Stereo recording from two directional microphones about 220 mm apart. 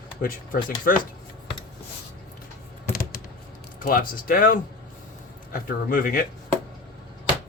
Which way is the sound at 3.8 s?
40° left (ahead or behind).